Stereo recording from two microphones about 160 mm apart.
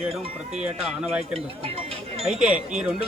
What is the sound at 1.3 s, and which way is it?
Speech, 35° right (ahead or behind).